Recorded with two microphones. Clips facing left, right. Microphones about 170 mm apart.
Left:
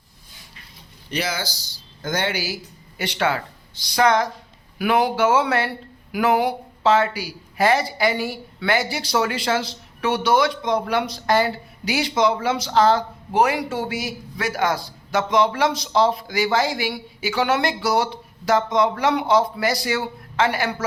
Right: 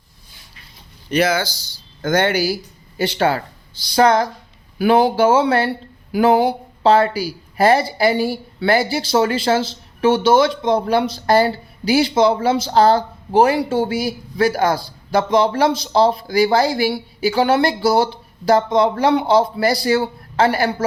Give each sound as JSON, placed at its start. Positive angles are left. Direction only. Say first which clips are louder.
{"t": 1.1, "sound": "speech", "louder": "right 9 dB", "side_deg": -55}